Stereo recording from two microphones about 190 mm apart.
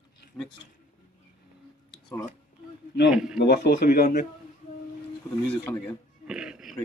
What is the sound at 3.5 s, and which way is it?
Speech, 60° left (ahead or behind).